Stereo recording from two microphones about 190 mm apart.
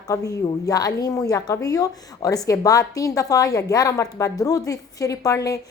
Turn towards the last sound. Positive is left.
turn(degrees=15)  # may be behind; listen again after turning